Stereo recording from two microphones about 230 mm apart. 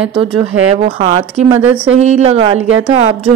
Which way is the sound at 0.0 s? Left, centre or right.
Right.